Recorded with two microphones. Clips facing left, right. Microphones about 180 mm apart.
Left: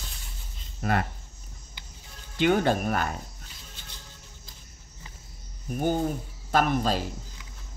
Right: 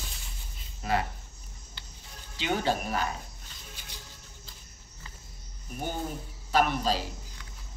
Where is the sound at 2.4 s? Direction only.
55° left (ahead or behind).